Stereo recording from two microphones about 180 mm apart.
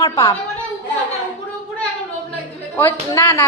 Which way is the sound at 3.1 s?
15° left (ahead or behind).